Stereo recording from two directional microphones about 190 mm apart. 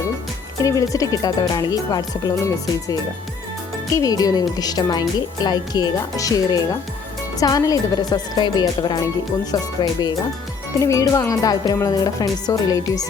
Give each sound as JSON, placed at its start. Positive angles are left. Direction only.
{"t": 0.6, "sound": "speech", "side_deg": 15}
{"t": 3.9, "sound": "speech", "side_deg": 20}